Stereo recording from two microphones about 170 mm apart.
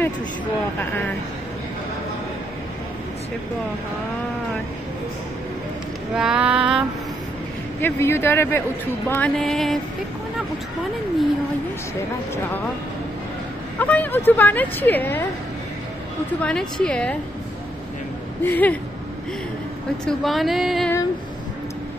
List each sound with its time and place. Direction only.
6.1 s music: 5° right (ahead or behind)
7.8 s speech: 15° left (ahead or behind)
9.1 s music: 5° left (ahead or behind)
13.7 s speech: 10° left (ahead or behind)
16.4 s music: 5° left (ahead or behind)
18.4 s speech: 10° left (ahead or behind)
20.1 s music: centre (ahead or behind)